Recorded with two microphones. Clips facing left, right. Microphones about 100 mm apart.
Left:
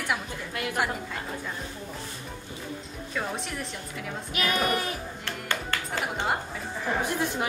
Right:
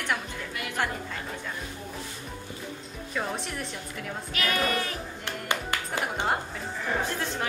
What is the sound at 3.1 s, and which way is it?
Speech, centre (ahead or behind).